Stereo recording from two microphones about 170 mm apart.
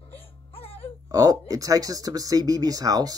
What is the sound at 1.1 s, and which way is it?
Speech, 20° right (ahead or behind).